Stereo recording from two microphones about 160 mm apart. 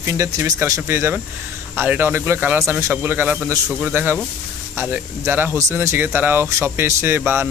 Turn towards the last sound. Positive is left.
turn(degrees=-15)  # may be behind; listen again after turning